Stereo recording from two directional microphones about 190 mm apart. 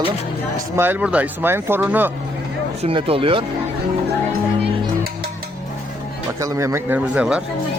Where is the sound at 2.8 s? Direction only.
30° right (ahead or behind).